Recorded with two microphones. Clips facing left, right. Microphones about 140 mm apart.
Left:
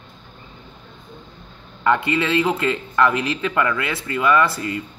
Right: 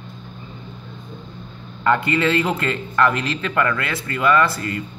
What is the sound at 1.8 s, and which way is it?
A man's voice, 10° left (ahead or behind).